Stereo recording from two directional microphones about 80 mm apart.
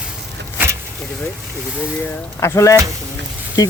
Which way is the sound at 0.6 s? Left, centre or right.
Right.